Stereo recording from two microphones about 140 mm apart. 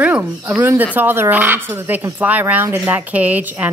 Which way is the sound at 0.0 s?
10° right (ahead or behind).